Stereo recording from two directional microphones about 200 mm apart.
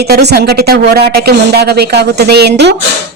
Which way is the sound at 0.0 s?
55° right (ahead or behind).